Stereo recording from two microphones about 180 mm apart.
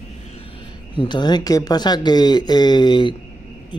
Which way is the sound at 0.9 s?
25° left (ahead or behind).